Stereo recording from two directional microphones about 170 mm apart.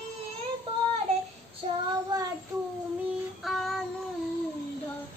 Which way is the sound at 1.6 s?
35° right (ahead or behind).